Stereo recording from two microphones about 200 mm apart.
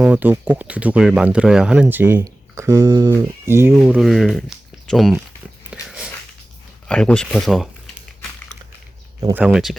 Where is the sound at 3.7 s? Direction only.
Centre (ahead or behind).